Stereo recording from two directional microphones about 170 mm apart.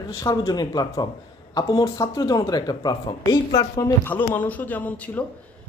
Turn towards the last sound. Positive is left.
turn(degrees=10)  # may be behind; listen again after turning